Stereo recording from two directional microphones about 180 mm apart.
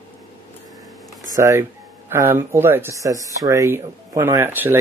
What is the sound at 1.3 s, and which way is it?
Speech, 15° right (ahead or behind).